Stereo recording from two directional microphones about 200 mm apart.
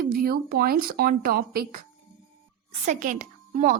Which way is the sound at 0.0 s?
50° right (ahead or behind).